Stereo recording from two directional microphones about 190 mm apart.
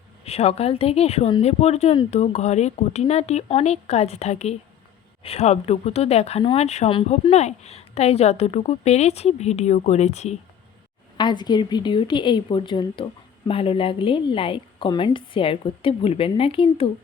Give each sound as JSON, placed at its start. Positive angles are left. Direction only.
{"t": 0.3, "sound": "speech", "side_deg": 35}
{"t": 11.2, "sound": "a woman's voice", "side_deg": 25}